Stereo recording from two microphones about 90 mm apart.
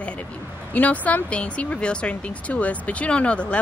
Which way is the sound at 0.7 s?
15° left (ahead or behind).